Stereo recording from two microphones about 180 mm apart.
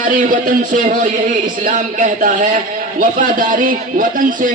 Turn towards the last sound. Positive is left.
turn(degrees=-50)  # may be behind; listen again after turning